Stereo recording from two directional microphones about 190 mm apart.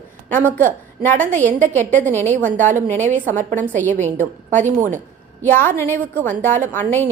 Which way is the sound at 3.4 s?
45° right (ahead or behind).